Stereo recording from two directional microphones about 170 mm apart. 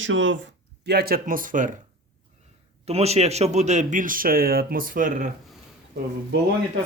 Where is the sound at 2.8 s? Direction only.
40° right (ahead or behind).